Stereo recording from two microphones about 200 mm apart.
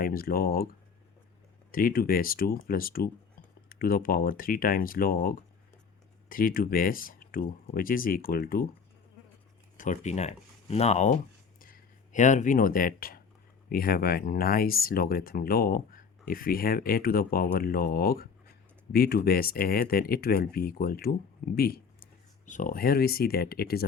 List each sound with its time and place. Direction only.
0.0 s speech: 45° left (ahead or behind)
1.7 s speech: 45° left (ahead or behind)
9.7 s speech: 40° left (ahead or behind)
11.6 s a sound: 40° left (ahead or behind)
13.7 s speech: 50° left (ahead or behind)